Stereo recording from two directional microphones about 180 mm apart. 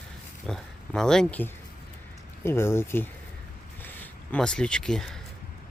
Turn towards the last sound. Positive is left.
turn(degrees=0)  # may be behind; listen again after turning